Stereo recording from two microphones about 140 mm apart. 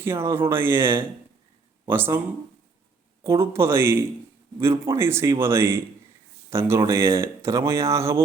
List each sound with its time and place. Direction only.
0.0 s speech: 15° right (ahead or behind)
3.2 s speech: 20° right (ahead or behind)